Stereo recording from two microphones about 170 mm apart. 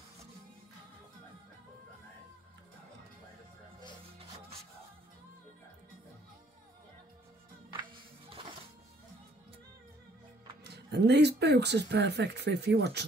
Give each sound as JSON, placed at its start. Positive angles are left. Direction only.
{"t": 7.7, "sound": "music", "side_deg": -30}
{"t": 10.6, "sound": "speech", "side_deg": -75}